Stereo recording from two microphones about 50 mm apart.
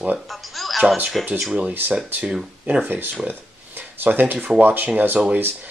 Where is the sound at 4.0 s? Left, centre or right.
Right.